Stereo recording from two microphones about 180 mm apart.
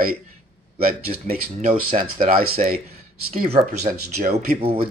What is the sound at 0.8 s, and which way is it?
Speech, 55° right (ahead or behind).